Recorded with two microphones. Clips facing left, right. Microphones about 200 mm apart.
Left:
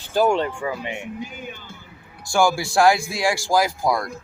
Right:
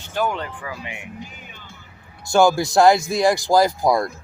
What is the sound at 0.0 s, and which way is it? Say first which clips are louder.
Speech: left 5 dB; 30° left (ahead or behind).